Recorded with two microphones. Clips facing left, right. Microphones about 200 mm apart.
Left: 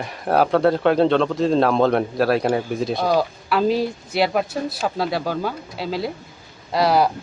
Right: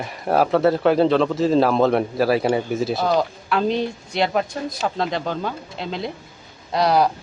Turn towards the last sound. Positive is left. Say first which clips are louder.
# even
turn(degrees=5)  # may be behind; listen again after turning